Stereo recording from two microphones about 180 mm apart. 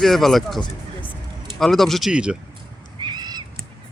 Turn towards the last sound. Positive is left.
turn(degrees=-25)  # may be behind; listen again after turning